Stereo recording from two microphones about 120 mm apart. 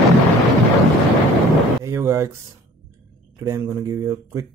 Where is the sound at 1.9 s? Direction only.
25° right (ahead or behind).